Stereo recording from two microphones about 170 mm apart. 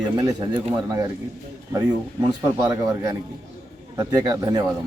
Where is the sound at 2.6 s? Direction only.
15° right (ahead or behind).